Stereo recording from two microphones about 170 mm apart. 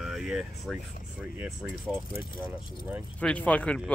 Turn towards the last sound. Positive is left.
turn(degrees=10)  # may be behind; listen again after turning